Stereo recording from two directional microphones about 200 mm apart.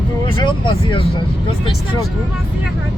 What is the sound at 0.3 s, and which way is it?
Speech, 25° left (ahead or behind).